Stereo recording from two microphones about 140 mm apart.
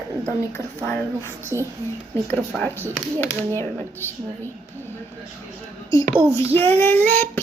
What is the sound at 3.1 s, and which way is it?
Speech, 15° left (ahead or behind).